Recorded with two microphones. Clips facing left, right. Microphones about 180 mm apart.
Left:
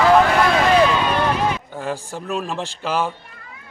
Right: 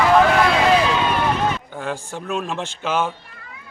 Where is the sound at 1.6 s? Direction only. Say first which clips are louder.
Left 1 dB; centre (ahead or behind).